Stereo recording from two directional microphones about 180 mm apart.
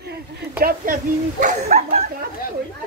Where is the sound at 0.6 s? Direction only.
50° right (ahead or behind).